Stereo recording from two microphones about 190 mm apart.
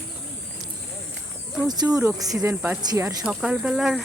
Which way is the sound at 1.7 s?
20° right (ahead or behind).